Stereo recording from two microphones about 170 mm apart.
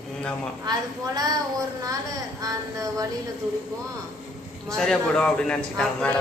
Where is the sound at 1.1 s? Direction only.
20° right (ahead or behind).